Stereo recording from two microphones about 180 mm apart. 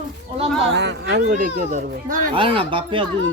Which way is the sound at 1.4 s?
50° right (ahead or behind).